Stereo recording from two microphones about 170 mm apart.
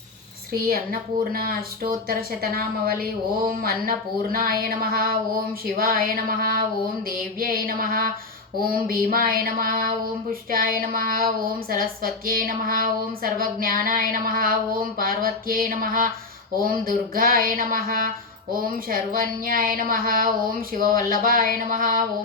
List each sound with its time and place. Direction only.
0.5 s a woman's voice: 60° right (ahead or behind)